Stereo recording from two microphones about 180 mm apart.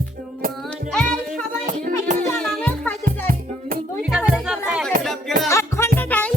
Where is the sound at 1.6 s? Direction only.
45° right (ahead or behind).